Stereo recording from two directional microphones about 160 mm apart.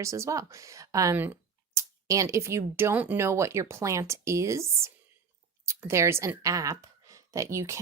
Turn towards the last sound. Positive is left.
turn(degrees=-20)  # may be behind; listen again after turning